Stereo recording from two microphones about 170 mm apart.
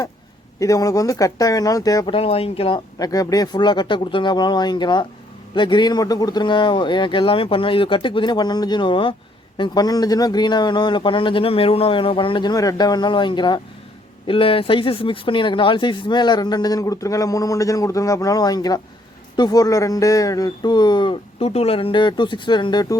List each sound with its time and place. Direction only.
0.6 s speech: 20° left (ahead or behind)
2.1 s speech: 35° left (ahead or behind)